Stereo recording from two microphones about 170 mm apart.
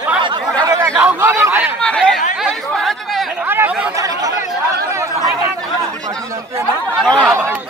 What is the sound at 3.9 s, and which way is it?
Chatter, 20° right (ahead or behind).